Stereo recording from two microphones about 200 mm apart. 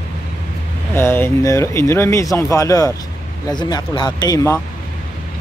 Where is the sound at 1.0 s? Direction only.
10° left (ahead or behind).